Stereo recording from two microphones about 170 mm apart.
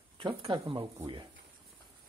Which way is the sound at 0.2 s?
30° right (ahead or behind).